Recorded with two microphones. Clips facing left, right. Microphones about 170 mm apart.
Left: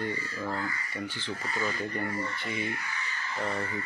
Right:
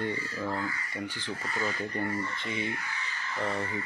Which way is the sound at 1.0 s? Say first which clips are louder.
Even; 15° right (ahead or behind).